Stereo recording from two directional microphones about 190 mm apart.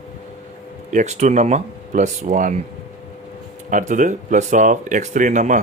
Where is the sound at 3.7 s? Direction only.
40° right (ahead or behind).